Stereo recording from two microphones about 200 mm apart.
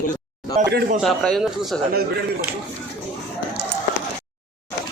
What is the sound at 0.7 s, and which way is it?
Speech, 50° right (ahead or behind).